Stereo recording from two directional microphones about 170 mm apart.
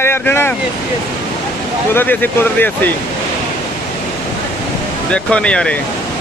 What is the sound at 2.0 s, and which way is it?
Speech, 10° left (ahead or behind).